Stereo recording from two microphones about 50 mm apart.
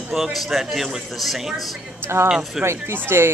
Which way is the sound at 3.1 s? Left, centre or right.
Right.